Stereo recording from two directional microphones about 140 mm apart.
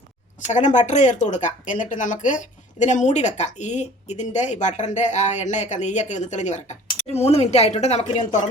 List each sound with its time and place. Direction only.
0.4 s speech: 60° left (ahead or behind)